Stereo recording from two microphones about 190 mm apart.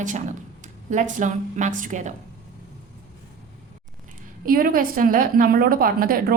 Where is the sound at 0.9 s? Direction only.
40° right (ahead or behind).